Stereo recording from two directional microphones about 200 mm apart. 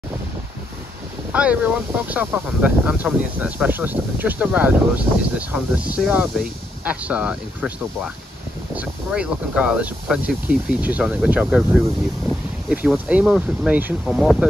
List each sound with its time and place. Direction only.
1.3 s speech: 5° right (ahead or behind)